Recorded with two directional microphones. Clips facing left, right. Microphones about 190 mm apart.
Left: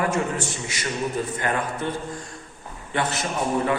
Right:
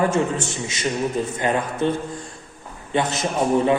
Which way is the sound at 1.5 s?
20° right (ahead or behind).